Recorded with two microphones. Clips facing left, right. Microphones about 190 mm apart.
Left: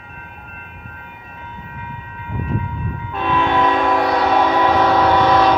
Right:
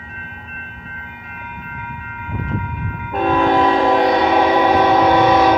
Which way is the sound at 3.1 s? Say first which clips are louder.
Right 4 dB; 45° right (ahead or behind).